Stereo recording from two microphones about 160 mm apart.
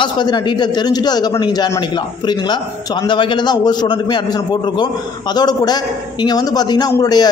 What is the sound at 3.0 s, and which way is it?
A man's voice, 30° left (ahead or behind).